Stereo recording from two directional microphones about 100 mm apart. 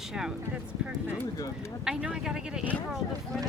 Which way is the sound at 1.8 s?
10° right (ahead or behind).